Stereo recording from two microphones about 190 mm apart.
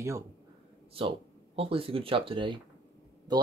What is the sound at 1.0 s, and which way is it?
Speech, 30° right (ahead or behind).